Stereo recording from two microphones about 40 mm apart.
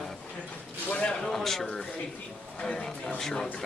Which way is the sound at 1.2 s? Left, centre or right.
Centre.